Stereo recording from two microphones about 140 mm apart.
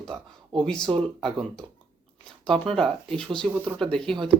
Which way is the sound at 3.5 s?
10° right (ahead or behind).